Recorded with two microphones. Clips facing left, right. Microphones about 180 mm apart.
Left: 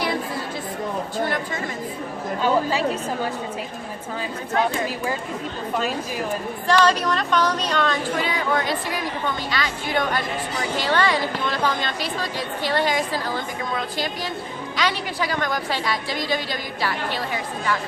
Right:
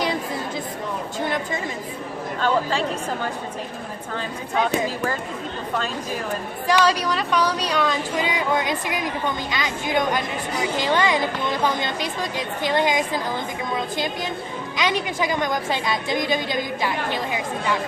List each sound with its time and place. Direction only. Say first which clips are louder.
2.4 s a woman's voice: left 1 dB; 5° left (ahead or behind)
6.7 s a woman's voice: left 1 dB; 10° right (ahead or behind)